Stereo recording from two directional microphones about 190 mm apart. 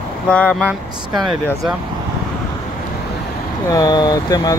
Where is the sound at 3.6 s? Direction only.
20° left (ahead or behind).